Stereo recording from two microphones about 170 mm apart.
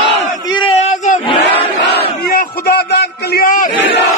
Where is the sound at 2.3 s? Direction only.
65° left (ahead or behind).